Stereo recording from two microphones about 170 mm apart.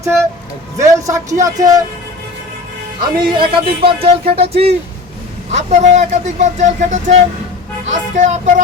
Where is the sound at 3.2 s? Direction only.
30° right (ahead or behind); by 8.5 s 45° right (ahead or behind).